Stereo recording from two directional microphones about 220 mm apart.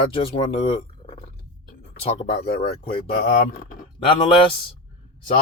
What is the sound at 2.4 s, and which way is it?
Speech, 40° left (ahead or behind).